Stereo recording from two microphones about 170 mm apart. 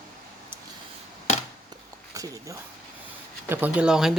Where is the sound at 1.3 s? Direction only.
40° left (ahead or behind).